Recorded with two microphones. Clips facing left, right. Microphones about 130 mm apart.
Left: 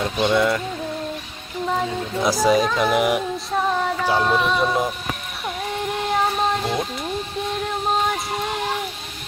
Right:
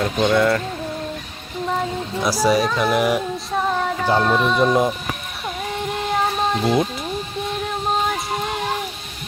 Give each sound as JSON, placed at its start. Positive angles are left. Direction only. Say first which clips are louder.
{"t": 0.0, "sound": "speech", "louder": "right 2 dB", "side_deg": 5}
{"t": 0.3, "sound": "speech", "louder": "right 2 dB", "side_deg": 15}
{"t": 1.6, "sound": "a sound", "louder": "even", "side_deg": 0}
{"t": 2.4, "sound": "speech", "louder": "even", "side_deg": 20}
{"t": 3.3, "sound": "speech", "louder": "even", "side_deg": 0}
{"t": 5.7, "sound": "music", "louder": "even", "side_deg": 0}
{"t": 7.4, "sound": "child singing", "louder": "even", "side_deg": 0}